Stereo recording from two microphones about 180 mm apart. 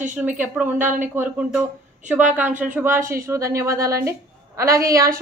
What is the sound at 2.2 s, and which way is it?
Speech, 45° right (ahead or behind).